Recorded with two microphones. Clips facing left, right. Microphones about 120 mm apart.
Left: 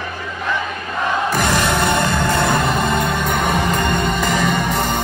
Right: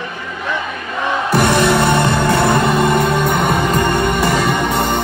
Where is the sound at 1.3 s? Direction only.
45° right (ahead or behind).